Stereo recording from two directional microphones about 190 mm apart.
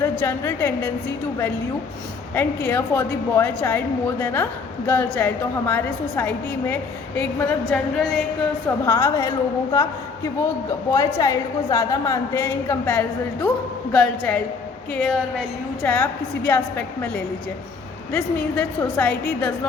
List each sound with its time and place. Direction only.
0.0 s a woman's voice: 15° left (ahead or behind)
2.3 s a woman's voice: 10° left (ahead or behind)
8.9 s a woman's voice: 15° left (ahead or behind)
10.9 s a woman's voice: 20° left (ahead or behind)
18.1 s a woman's voice: 10° left (ahead or behind)